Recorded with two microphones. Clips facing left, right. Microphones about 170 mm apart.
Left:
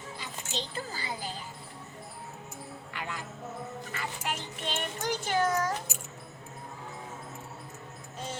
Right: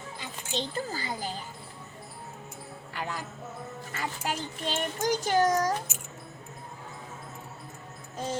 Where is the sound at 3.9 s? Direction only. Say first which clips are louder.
Right 4 dB; 40° right (ahead or behind).